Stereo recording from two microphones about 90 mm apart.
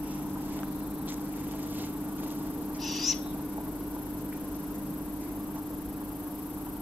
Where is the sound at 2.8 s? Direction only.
Centre (ahead or behind).